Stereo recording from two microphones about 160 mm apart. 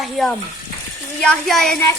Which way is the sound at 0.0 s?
Centre (ahead or behind).